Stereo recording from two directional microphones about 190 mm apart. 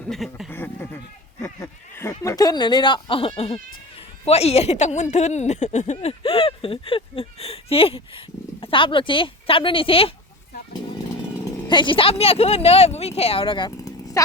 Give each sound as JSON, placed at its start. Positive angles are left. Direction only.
{"t": 0.1, "sound": "speech", "side_deg": 0}
{"t": 0.5, "sound": "goat", "side_deg": 10}
{"t": 1.4, "sound": "a woman's voice", "side_deg": 10}
{"t": 11.7, "sound": "speech", "side_deg": 25}